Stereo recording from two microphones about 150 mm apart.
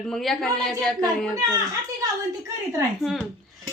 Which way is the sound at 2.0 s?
25° right (ahead or behind).